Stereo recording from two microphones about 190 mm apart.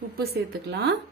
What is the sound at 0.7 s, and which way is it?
Speech, 60° right (ahead or behind).